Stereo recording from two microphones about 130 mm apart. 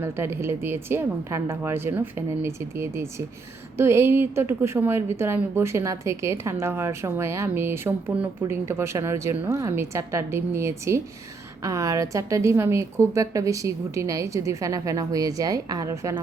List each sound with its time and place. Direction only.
0.0 s a woman's voice: 20° right (ahead or behind)